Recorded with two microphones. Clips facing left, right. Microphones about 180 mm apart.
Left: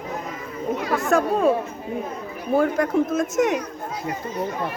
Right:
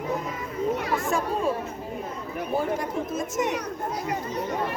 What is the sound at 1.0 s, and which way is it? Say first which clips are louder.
Speech: left 6 dB; 70° left (ahead or behind).